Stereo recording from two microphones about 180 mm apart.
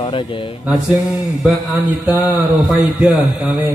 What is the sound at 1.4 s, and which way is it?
Speech, centre (ahead or behind).